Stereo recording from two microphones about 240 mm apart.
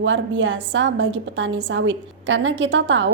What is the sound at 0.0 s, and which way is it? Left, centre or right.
A woman's voice, right.